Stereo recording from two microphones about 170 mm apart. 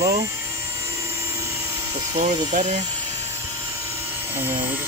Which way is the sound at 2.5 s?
45° right (ahead or behind).